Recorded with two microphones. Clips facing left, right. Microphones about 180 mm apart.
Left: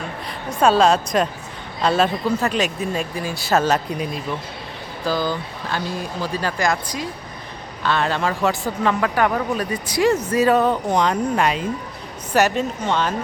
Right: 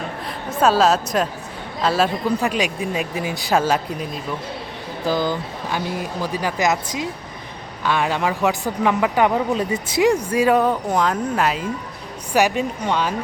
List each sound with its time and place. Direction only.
0.3 s a woman's voice: 5° right (ahead or behind)
5.0 s speech: 20° right (ahead or behind)